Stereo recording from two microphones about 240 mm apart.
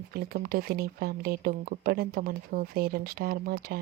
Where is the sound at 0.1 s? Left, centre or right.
Right.